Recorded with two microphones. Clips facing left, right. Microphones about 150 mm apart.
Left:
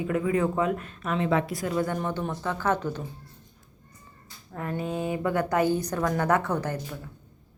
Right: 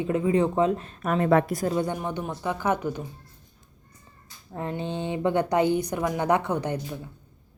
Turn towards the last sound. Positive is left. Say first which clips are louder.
# right 2 dB
turn(degrees=-15)  # may be behind; listen again after turning